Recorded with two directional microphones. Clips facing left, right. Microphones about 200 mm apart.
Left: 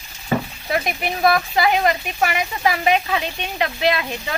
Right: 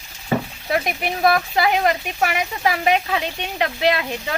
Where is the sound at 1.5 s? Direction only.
60° right (ahead or behind).